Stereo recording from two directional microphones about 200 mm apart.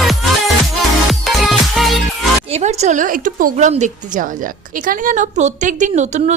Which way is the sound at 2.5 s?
35° right (ahead or behind).